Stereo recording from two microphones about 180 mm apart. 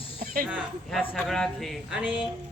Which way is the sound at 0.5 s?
Centre (ahead or behind).